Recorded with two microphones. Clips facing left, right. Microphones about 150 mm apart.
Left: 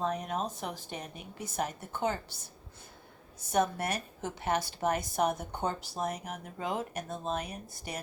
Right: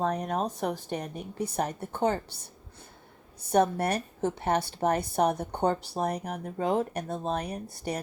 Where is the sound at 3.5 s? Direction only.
35° right (ahead or behind).